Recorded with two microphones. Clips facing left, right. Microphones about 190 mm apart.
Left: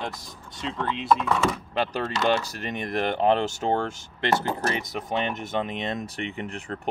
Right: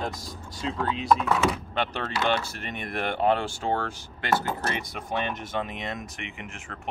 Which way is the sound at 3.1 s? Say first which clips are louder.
Left 1 dB; 20° left (ahead or behind).